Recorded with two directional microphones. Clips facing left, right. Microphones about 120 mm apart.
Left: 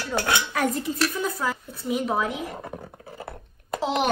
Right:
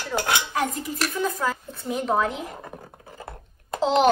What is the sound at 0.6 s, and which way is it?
Speech, 40° left (ahead or behind).